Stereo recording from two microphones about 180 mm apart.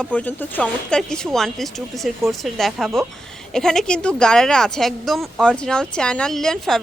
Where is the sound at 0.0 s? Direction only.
10° left (ahead or behind).